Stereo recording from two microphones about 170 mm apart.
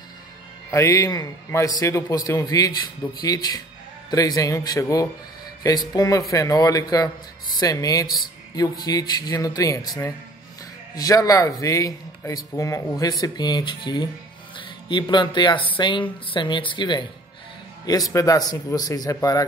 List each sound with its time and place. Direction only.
0.7 s speech: 20° left (ahead or behind)
11.0 s speech: 20° left (ahead or behind)